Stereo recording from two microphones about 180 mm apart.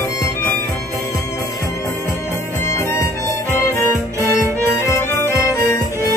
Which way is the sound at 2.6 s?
15° left (ahead or behind).